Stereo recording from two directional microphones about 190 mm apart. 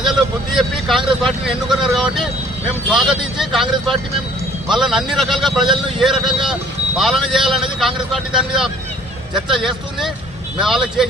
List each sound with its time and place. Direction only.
0.1 s speech: centre (ahead or behind)
1.2 s vehicle: centre (ahead or behind)
2.9 s a man's voice: centre (ahead or behind)